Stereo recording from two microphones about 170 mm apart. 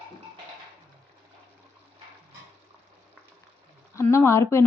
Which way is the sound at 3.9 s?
15° left (ahead or behind).